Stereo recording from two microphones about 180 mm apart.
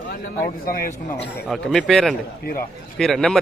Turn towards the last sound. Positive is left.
turn(degrees=0)  # may be behind; listen again after turning